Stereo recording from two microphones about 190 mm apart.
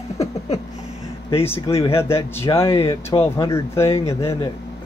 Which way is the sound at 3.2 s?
15° left (ahead or behind).